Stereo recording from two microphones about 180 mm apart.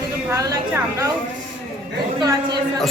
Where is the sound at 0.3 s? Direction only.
15° right (ahead or behind).